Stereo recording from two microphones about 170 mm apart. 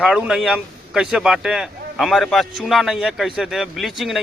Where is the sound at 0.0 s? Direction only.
5° right (ahead or behind).